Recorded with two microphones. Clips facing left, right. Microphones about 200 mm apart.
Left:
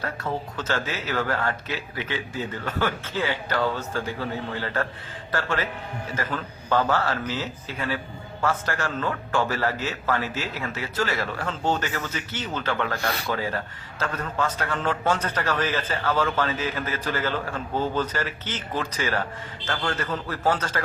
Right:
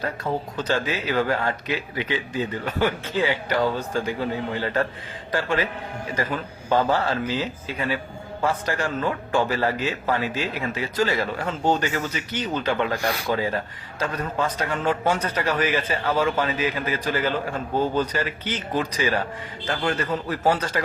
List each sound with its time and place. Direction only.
0.7 s a man's voice: 15° right (ahead or behind)